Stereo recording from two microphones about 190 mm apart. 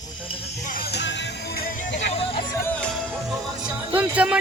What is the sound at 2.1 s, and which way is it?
Music, 30° left (ahead or behind).